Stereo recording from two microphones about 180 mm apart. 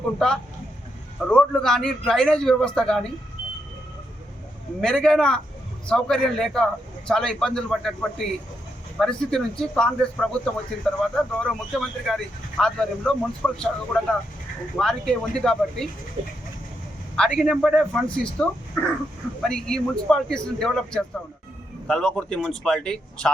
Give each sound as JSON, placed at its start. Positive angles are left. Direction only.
{"t": 0.2, "sound": "speech", "side_deg": 5}
{"t": 4.8, "sound": "speech", "side_deg": 5}
{"t": 17.2, "sound": "speech", "side_deg": 0}
{"t": 18.8, "sound": "a sound", "side_deg": 5}
{"t": 19.4, "sound": "speech", "side_deg": 5}